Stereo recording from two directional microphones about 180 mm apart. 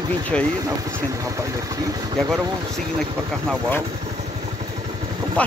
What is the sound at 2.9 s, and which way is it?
Speech, centre (ahead or behind).